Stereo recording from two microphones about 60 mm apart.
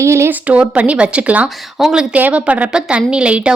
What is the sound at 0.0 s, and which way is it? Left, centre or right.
Speech, right.